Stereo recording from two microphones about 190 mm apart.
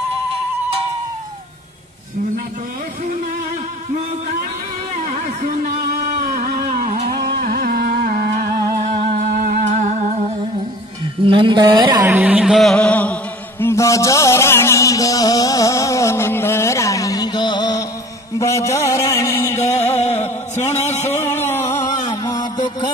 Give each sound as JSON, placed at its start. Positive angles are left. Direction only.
{"t": 4.9, "sound": "a sound", "side_deg": -35}
{"t": 6.2, "sound": "music", "side_deg": -50}
{"t": 8.8, "sound": "music", "side_deg": -35}
{"t": 11.2, "sound": "a woman's voice", "side_deg": -25}
{"t": 12.1, "sound": "music", "side_deg": -10}
{"t": 18.4, "sound": "a sound", "side_deg": 15}
{"t": 19.8, "sound": "music", "side_deg": 35}
{"t": 20.8, "sound": "a sound", "side_deg": 35}
{"t": 21.2, "sound": "music", "side_deg": 10}